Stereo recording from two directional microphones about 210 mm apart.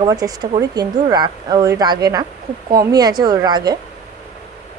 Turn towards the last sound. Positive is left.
turn(degrees=-20)  # may be behind; listen again after turning